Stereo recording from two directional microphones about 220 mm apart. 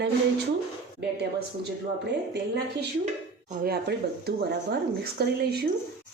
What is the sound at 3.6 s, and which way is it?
Speech, 45° right (ahead or behind).